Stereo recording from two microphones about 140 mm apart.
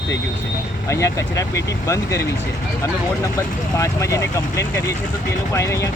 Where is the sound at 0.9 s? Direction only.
20° left (ahead or behind).